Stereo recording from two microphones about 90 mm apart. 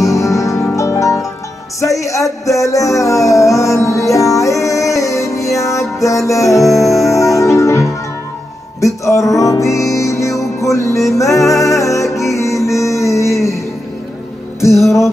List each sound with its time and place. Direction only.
0.0 s music: 35° left (ahead or behind)
6.7 s music: centre (ahead or behind)
7.1 s music: 35° left (ahead or behind)